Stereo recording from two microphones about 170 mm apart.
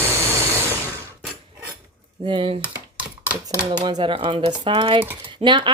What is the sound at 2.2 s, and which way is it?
Speech, 30° right (ahead or behind).